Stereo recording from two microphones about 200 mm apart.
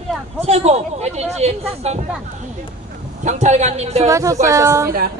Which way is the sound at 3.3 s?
35° right (ahead or behind).